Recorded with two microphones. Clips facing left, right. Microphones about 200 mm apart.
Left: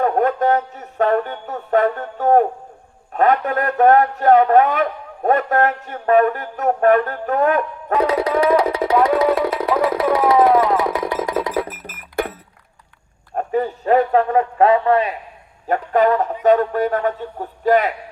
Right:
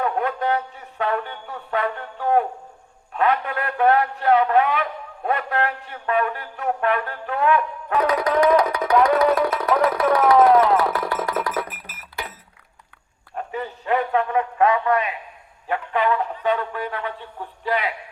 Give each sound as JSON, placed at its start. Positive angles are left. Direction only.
{"t": 0.0, "sound": "music", "side_deg": 45}
{"t": 3.1, "sound": "a man's voice", "side_deg": 45}
{"t": 7.9, "sound": "a sound", "side_deg": 30}
{"t": 8.5, "sound": "music", "side_deg": 25}
{"t": 9.8, "sound": "a sound", "side_deg": 25}
{"t": 10.4, "sound": "music", "side_deg": 0}
{"t": 10.8, "sound": "music", "side_deg": 20}
{"t": 11.3, "sound": "music", "side_deg": 30}
{"t": 11.7, "sound": "music", "side_deg": 45}
{"t": 13.3, "sound": "a sound", "side_deg": 40}
{"t": 15.6, "sound": "a man's voice", "side_deg": 40}